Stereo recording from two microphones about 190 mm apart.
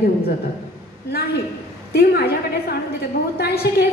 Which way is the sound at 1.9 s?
55° left (ahead or behind).